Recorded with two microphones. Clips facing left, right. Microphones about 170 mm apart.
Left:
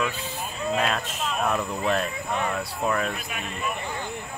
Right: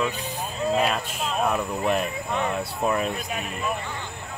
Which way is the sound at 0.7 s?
10° right (ahead or behind).